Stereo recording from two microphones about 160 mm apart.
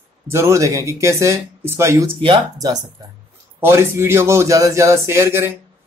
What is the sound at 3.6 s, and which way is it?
Speech, 15° right (ahead or behind).